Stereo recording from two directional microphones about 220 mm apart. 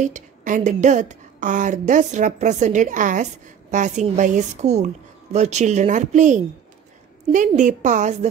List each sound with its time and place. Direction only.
0.0 s speech: 35° right (ahead or behind)